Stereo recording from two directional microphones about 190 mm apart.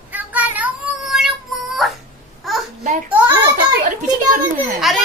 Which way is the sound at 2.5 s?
Centre (ahead or behind).